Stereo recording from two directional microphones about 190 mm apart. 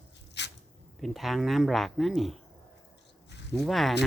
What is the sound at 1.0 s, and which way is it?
Speech, centre (ahead or behind).